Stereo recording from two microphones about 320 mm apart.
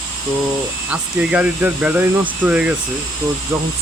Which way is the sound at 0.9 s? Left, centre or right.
Centre.